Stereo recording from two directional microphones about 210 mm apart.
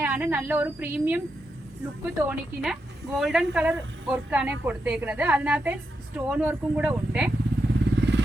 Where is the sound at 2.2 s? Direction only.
5° right (ahead or behind).